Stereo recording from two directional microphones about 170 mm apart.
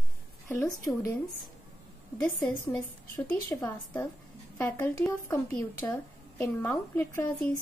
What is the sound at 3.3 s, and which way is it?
Speech, 15° left (ahead or behind).